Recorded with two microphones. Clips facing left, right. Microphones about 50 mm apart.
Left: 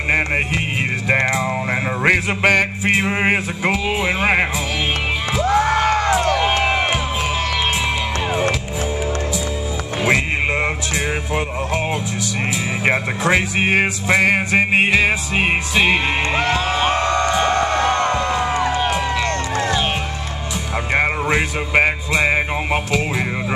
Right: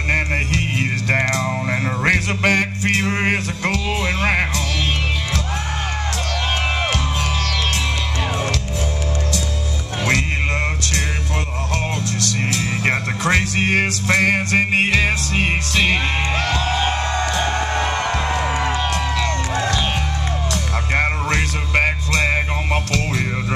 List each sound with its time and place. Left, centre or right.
0.1 s music: centre
6.1 s music: centre
11.3 s speech: centre
16.4 s music: left
18.6 s music: centre
19.2 s a sound: left
20.9 s music: centre